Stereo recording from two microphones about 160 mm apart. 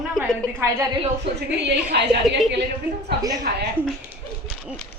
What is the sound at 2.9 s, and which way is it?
Speech, 15° right (ahead or behind).